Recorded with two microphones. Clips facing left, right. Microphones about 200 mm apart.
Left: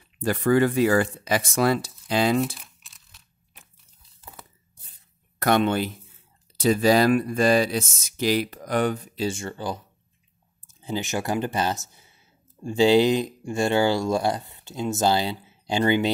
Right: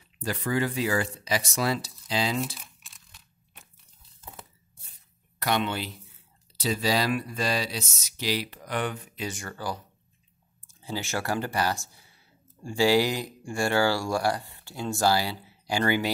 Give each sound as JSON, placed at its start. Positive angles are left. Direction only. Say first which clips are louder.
{"t": 0.2, "sound": "speech", "louder": "left 8 dB", "side_deg": 55}
{"t": 2.6, "sound": "crumpling", "louder": "right 1 dB", "side_deg": 0}
{"t": 5.4, "sound": "speech", "louder": "left 7 dB", "side_deg": 50}